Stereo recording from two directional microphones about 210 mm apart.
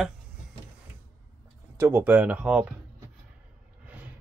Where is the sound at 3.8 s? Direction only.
5° right (ahead or behind).